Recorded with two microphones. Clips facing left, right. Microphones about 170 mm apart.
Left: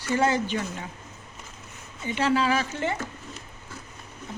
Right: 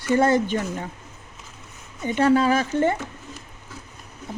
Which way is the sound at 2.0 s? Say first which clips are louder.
Right 5 dB; 50° right (ahead or behind).